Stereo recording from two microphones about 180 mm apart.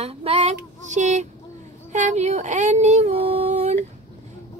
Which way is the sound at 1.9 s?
40° right (ahead or behind).